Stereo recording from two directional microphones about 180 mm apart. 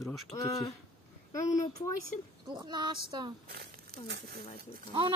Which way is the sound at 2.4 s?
25° right (ahead or behind).